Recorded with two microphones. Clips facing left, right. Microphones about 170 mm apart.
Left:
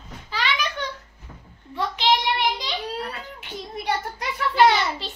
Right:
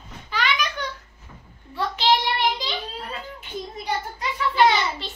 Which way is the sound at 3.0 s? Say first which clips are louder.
Left 2 dB; 70° left (ahead or behind).